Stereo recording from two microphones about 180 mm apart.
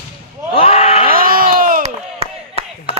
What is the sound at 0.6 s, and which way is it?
Screaming, 35° left (ahead or behind).